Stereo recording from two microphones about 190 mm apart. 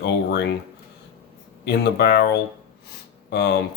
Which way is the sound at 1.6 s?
60° left (ahead or behind).